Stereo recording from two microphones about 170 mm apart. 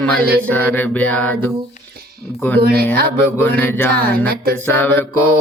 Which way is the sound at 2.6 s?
65° right (ahead or behind).